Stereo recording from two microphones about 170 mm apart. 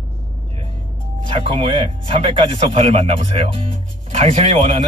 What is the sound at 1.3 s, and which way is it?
Speech, 30° right (ahead or behind).